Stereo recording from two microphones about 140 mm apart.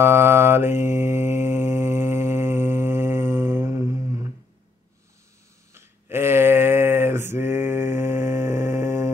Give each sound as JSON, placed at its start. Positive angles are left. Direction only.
{"t": 0.0, "sound": "mantra", "side_deg": -20}
{"t": 5.7, "sound": "mantra", "side_deg": -15}